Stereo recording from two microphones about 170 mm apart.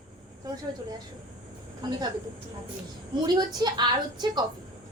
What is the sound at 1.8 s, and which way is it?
Speech, 25° right (ahead or behind).